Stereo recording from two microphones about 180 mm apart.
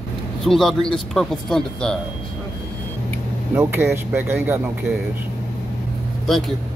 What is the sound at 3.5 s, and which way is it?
Speech, 15° right (ahead or behind).